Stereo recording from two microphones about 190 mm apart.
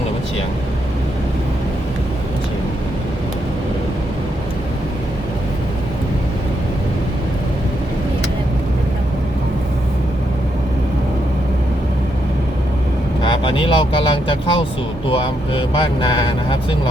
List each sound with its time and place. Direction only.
13.2 s vehicle: 25° left (ahead or behind)
15.1 s speech: 25° left (ahead or behind)